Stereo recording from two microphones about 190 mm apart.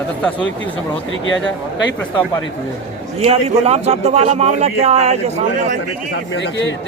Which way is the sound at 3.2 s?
30° right (ahead or behind).